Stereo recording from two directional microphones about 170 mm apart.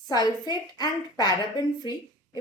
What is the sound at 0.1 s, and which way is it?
A woman's voice, 25° left (ahead or behind).